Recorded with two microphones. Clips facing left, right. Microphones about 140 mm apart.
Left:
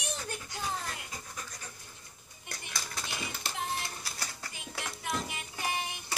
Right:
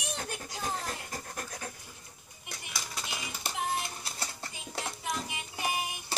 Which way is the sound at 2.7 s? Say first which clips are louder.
Right 1 dB; 15° right (ahead or behind).